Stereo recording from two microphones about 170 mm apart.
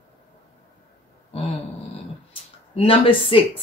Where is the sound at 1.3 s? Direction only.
35° left (ahead or behind).